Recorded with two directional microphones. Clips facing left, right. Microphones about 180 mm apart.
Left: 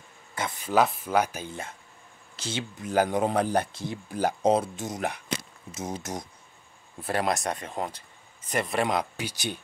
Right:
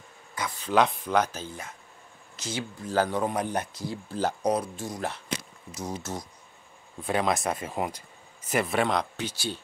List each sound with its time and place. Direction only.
0.6 s speech: 5° left (ahead or behind)
2.3 s a sound: 30° left (ahead or behind)
2.8 s speech: 20° left (ahead or behind)
3.3 s speech: 30° left (ahead or behind)
3.8 s speech: 15° left (ahead or behind)
4.4 s speech: 25° left (ahead or behind)
7.0 s speech: centre (ahead or behind)
8.8 s speech: 10° left (ahead or behind)